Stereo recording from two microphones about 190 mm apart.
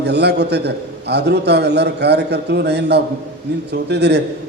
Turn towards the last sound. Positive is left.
turn(degrees=-60)  # may be behind; listen again after turning